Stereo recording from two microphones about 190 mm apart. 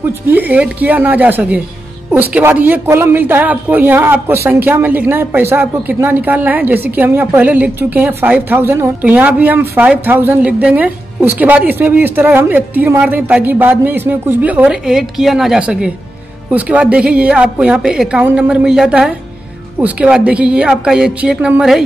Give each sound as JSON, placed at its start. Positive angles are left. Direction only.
{"t": 0.0, "sound": "a woman's voice", "side_deg": -10}